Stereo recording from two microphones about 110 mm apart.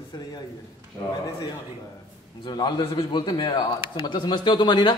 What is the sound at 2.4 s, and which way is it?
A man's voice, 45° left (ahead or behind).